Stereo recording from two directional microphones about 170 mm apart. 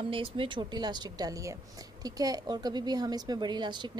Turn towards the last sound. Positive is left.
turn(degrees=-25)  # may be behind; listen again after turning